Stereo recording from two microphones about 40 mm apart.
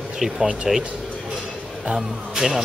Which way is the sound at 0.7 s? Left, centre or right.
Centre.